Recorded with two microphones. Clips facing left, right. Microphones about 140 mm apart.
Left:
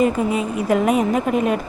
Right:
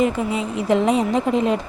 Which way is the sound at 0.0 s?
20° right (ahead or behind).